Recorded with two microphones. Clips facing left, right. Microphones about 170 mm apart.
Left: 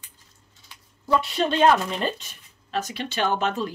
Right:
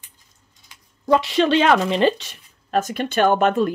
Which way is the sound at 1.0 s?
90° right.